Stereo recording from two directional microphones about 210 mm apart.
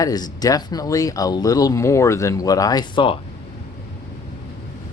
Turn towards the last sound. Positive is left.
turn(degrees=25)  # may be behind; listen again after turning